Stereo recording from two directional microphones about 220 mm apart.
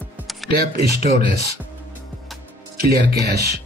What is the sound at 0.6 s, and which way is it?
Speech, 45° right (ahead or behind).